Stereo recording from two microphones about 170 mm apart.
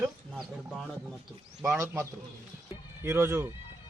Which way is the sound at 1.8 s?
15° right (ahead or behind).